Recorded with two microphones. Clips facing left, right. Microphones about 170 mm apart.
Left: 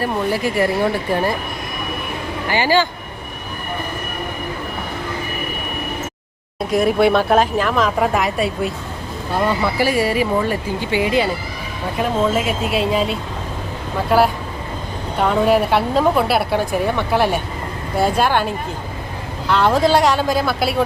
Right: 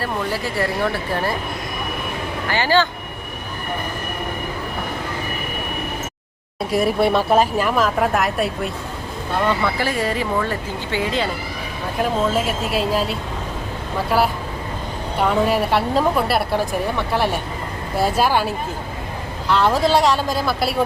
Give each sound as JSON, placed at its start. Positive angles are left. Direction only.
{"t": 0.0, "sound": "speech", "side_deg": 15}
{"t": 2.5, "sound": "speech", "side_deg": 15}
{"t": 6.7, "sound": "a woman's voice", "side_deg": -5}
{"t": 11.9, "sound": "a woman's voice", "side_deg": 0}